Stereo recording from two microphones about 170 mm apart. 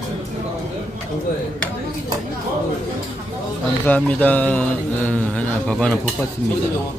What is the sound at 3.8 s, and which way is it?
Speech, 10° left (ahead or behind).